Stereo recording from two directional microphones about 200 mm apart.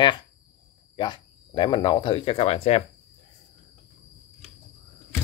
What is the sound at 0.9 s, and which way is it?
Speech, 20° left (ahead or behind).